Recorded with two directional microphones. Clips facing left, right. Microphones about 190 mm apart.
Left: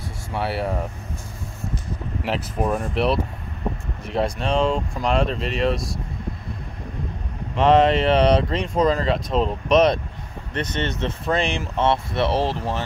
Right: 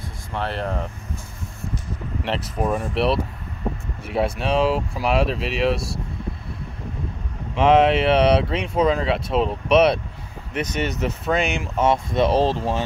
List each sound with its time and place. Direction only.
0.3 s speech: 10° left (ahead or behind)
2.2 s speech: centre (ahead or behind)
7.5 s speech: 5° right (ahead or behind)